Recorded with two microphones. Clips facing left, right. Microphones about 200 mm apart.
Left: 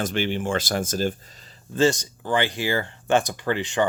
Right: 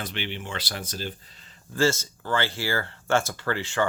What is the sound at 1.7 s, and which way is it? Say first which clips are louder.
Speech: left 3 dB; 20° left (ahead or behind).